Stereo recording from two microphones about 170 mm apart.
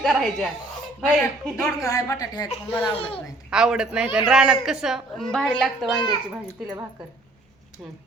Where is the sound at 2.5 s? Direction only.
35° left (ahead or behind).